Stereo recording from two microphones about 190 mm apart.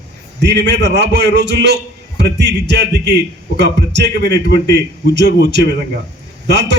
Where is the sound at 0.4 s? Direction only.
65° right (ahead or behind).